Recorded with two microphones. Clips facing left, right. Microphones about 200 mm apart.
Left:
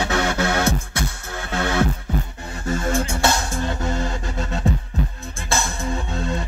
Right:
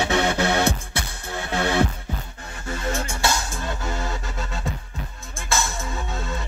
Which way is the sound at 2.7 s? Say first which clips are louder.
Left 4 dB; 50° left (ahead or behind).